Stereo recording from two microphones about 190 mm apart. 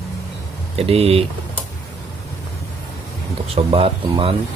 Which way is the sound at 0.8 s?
30° right (ahead or behind).